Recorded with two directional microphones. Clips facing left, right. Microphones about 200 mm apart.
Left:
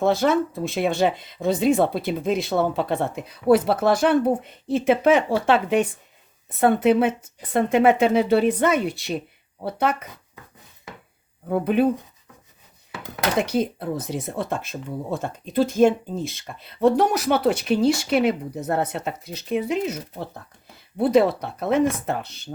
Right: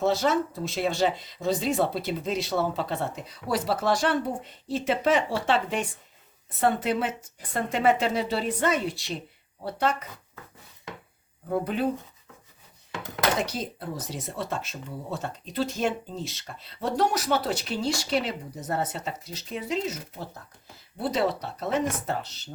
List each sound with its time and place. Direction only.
0.0 s speech: 55° left (ahead or behind)
11.6 s speech: 60° left (ahead or behind)
13.4 s speech: 60° left (ahead or behind)